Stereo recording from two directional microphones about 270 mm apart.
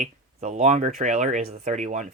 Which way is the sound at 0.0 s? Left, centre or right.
Right.